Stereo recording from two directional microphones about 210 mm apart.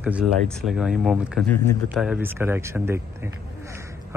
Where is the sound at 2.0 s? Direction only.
5° right (ahead or behind).